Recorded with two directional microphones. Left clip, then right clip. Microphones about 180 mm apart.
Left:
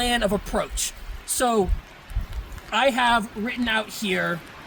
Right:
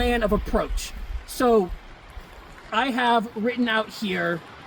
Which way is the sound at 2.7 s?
20° left (ahead or behind).